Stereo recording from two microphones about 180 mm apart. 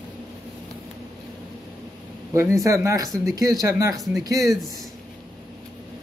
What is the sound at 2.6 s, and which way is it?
Speech, 15° right (ahead or behind).